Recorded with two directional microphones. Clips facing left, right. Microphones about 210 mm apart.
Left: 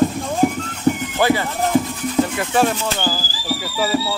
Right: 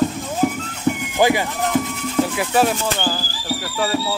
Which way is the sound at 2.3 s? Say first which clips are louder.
Even; 5° right (ahead or behind).